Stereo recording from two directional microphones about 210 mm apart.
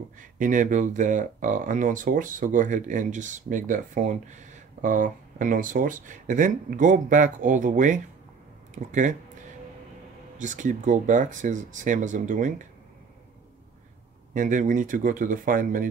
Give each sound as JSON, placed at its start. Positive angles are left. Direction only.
{"t": 0.4, "sound": "speech", "side_deg": -40}
{"t": 10.4, "sound": "speech", "side_deg": -35}
{"t": 14.3, "sound": "speech", "side_deg": -40}